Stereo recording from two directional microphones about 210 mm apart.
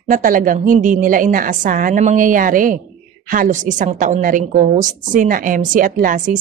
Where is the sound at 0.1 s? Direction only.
40° right (ahead or behind).